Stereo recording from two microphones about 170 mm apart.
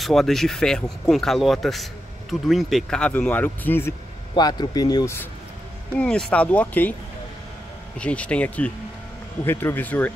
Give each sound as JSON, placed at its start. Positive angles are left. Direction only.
{"t": 0.0, "sound": "speech", "side_deg": 0}
{"t": 4.4, "sound": "speech", "side_deg": 25}
{"t": 5.9, "sound": "speech", "side_deg": 5}
{"t": 8.0, "sound": "speech", "side_deg": 5}